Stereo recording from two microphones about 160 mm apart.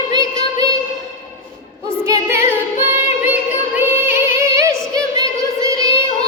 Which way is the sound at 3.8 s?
15° right (ahead or behind).